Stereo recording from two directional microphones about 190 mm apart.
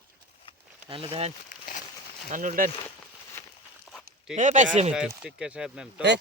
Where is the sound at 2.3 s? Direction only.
45° right (ahead or behind).